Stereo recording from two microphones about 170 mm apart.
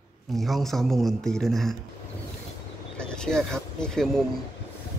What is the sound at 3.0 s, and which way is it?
Speech, 5° left (ahead or behind).